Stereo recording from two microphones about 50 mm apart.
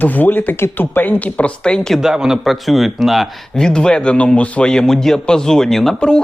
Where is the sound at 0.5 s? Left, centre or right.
Left.